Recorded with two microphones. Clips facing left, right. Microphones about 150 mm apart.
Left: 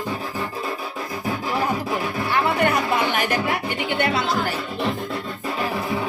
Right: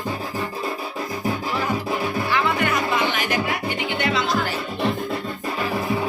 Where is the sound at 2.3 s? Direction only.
40° left (ahead or behind).